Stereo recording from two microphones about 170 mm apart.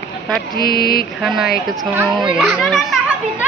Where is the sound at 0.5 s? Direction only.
65° left (ahead or behind).